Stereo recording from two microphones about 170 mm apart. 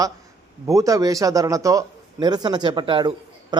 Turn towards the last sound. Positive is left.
turn(degrees=-25)  # may be behind; listen again after turning